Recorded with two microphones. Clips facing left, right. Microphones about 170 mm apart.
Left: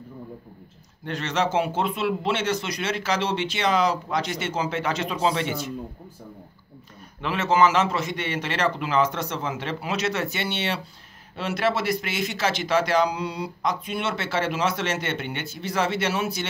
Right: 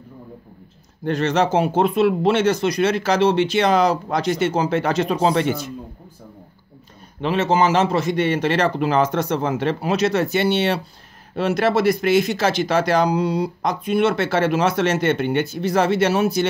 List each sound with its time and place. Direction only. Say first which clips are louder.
1.0 s speech: right 7 dB; 40° right (ahead or behind)
7.2 s a man's voice: right 3 dB; 30° right (ahead or behind)